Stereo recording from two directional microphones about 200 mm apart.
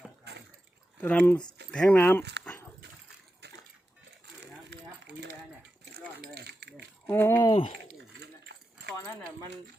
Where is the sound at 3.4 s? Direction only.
55° right (ahead or behind).